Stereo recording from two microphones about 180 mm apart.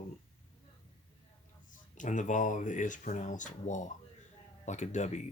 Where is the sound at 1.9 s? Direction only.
45° left (ahead or behind).